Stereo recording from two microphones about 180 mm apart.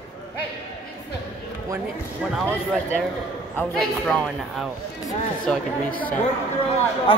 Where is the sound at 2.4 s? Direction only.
5° left (ahead or behind).